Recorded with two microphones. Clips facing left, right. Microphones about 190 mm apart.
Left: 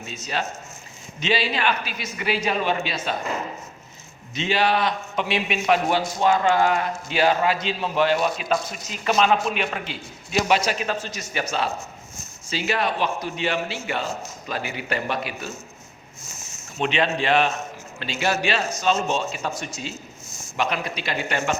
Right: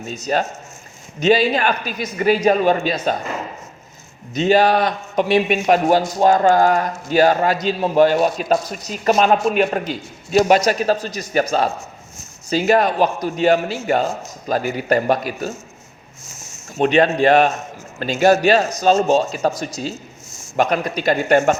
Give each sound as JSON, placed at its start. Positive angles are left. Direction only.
{"t": 0.0, "sound": "a man's voice", "side_deg": -45}
{"t": 4.4, "sound": "a man's voice", "side_deg": -45}
{"t": 16.7, "sound": "a man's voice", "side_deg": -45}